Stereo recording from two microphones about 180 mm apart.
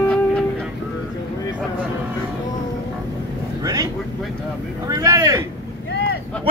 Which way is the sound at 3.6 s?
20° right (ahead or behind).